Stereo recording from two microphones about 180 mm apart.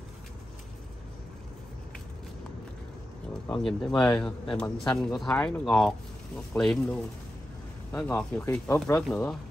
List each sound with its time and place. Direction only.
3.5 s speech: 5° left (ahead or behind)
3.9 s speech: 25° left (ahead or behind)
4.2 s speech: 5° left (ahead or behind)